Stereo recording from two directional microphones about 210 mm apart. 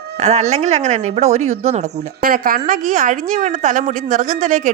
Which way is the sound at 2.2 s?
40° right (ahead or behind).